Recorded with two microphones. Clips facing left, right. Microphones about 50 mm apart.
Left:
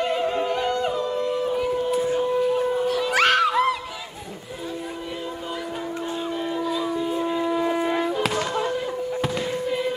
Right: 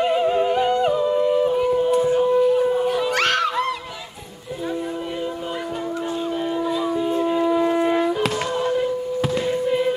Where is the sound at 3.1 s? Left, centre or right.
Centre.